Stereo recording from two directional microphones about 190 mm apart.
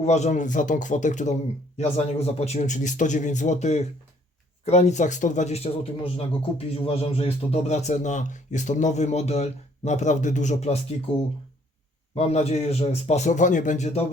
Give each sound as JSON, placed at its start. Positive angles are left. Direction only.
{"t": 0.0, "sound": "a man's voice", "side_deg": 35}
{"t": 12.1, "sound": "a man's voice", "side_deg": 35}